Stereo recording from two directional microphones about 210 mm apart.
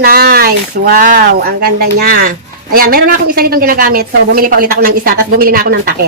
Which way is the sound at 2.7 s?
45° right (ahead or behind).